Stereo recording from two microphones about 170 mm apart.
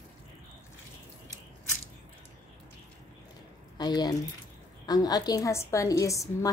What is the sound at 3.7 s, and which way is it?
A woman's voice, 25° left (ahead or behind).